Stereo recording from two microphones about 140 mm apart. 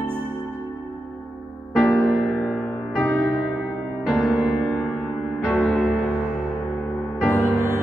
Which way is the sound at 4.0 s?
Centre (ahead or behind).